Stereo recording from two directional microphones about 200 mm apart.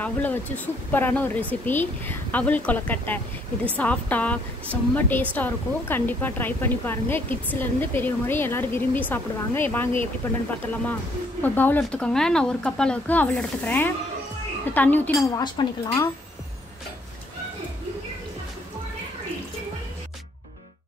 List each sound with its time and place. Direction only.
0.0 s a woman's voice: 10° left (ahead or behind)
11.4 s a woman's voice: 10° left (ahead or behind)
15.4 s speech: 20° left (ahead or behind)